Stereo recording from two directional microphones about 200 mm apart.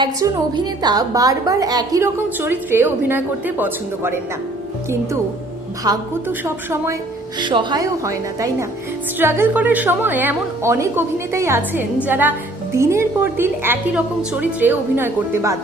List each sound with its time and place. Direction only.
0.0 s a woman's voice: 20° right (ahead or behind)
5.8 s a woman's voice: 15° right (ahead or behind)
7.3 s a woman's voice: 25° right (ahead or behind)